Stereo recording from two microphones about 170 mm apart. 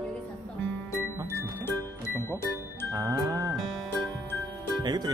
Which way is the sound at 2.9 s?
15° right (ahead or behind).